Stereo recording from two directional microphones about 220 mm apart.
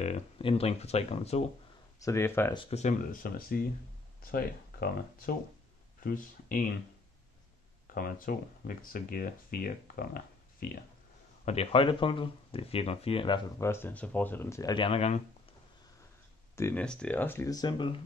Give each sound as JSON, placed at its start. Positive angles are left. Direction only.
{"t": 0.0, "sound": "speech", "side_deg": 25}
{"t": 2.0, "sound": "speech", "side_deg": 15}
{"t": 2.5, "sound": "speech", "side_deg": 25}
{"t": 7.8, "sound": "speech", "side_deg": 40}
{"t": 11.4, "sound": "speech", "side_deg": 25}
{"t": 16.5, "sound": "speech", "side_deg": 10}